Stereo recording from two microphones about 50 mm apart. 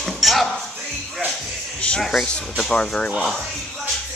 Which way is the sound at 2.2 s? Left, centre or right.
Left.